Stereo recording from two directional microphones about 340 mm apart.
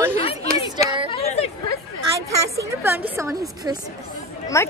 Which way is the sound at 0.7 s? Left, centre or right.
Centre.